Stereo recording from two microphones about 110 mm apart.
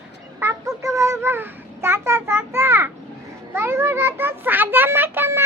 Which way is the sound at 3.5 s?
25° right (ahead or behind).